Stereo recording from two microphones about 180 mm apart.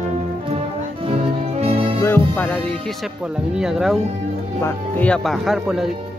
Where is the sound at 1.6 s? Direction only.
35° right (ahead or behind).